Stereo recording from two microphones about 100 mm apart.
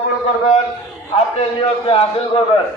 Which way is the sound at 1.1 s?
65° left (ahead or behind).